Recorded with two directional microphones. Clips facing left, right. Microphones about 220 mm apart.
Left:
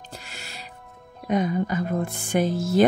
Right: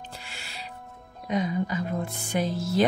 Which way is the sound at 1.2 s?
50° left (ahead or behind).